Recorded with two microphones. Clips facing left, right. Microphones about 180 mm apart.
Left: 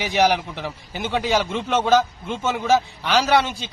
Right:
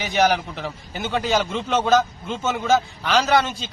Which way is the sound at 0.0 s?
15° left (ahead or behind).